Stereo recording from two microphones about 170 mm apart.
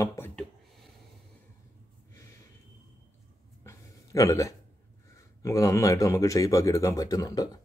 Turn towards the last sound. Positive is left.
turn(degrees=20)  # may be behind; listen again after turning